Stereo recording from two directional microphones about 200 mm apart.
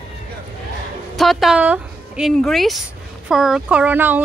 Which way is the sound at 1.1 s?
Centre (ahead or behind).